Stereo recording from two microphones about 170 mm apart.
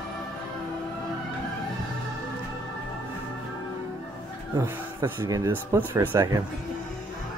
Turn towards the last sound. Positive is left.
turn(degrees=-15)  # may be behind; listen again after turning